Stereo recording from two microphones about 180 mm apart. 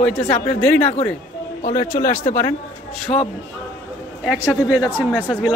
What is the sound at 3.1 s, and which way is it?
Speech, 35° left (ahead or behind).